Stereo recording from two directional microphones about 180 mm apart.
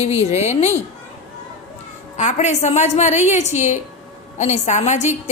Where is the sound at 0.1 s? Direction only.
35° left (ahead or behind).